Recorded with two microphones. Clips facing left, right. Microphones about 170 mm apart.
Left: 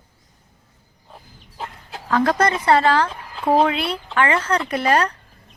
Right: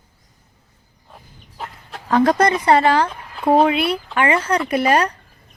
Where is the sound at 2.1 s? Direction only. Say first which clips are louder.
Right 3 dB; 20° right (ahead or behind).